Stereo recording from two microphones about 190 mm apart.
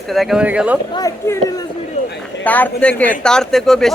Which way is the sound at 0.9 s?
20° left (ahead or behind).